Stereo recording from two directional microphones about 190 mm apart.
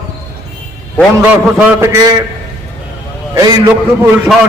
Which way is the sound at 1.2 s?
10° right (ahead or behind).